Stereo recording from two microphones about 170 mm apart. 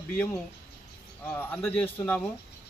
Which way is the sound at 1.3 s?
10° left (ahead or behind).